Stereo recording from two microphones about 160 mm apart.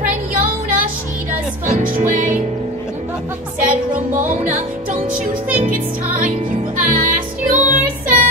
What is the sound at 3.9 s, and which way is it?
Music, 55° right (ahead or behind).